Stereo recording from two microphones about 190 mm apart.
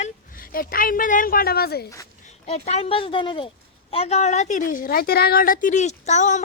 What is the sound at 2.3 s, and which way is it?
A woman's voice, 35° left (ahead or behind).